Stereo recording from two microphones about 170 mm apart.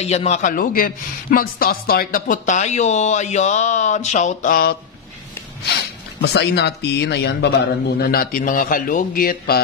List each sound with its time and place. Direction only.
0.0 s a man's voice: 40° left (ahead or behind); by 4.7 s 55° left (ahead or behind)
6.2 s speech: 75° left (ahead or behind)
8.0 s a man's voice: 60° left (ahead or behind)